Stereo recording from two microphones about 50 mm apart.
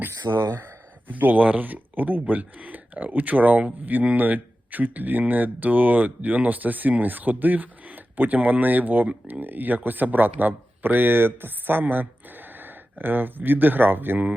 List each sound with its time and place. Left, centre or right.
0.0 s speech: right